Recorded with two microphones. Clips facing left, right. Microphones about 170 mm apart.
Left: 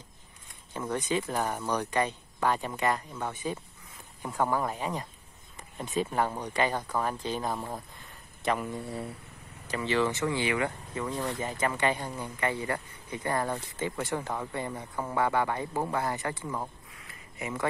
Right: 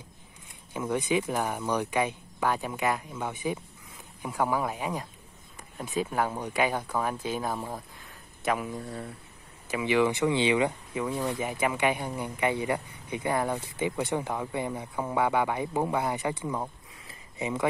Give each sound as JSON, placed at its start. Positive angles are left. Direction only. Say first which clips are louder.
{"t": 0.7, "sound": "speech", "louder": "right 3 dB", "side_deg": -10}
{"t": 4.2, "sound": "speech", "louder": "right 1 dB", "side_deg": 0}
{"t": 9.7, "sound": "speech", "louder": "right 3 dB", "side_deg": -10}
{"t": 17.1, "sound": "a sound", "louder": "right 4 dB", "side_deg": -20}